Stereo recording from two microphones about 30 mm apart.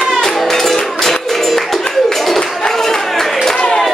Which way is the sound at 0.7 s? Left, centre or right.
Centre.